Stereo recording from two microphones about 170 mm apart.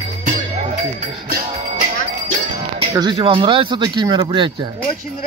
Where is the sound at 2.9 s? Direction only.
25° right (ahead or behind).